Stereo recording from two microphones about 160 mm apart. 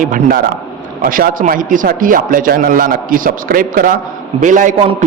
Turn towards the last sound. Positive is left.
turn(degrees=-55)  # may be behind; listen again after turning